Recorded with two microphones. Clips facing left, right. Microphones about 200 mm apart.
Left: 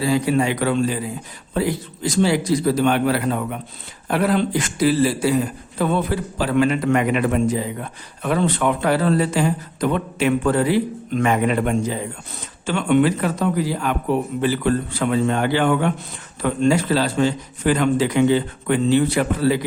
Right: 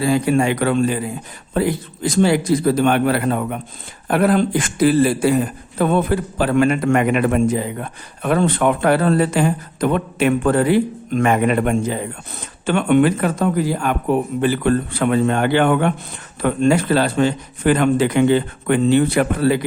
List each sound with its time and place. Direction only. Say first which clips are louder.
0.0 s a man's voice: right 2 dB; 50° right (ahead or behind)